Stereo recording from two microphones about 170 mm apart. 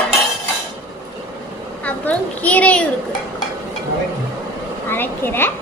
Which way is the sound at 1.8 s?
10° left (ahead or behind).